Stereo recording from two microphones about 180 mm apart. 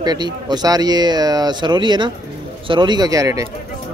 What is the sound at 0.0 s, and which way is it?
Speech, 25° right (ahead or behind).